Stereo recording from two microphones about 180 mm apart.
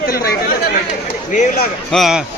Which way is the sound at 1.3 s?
45° left (ahead or behind).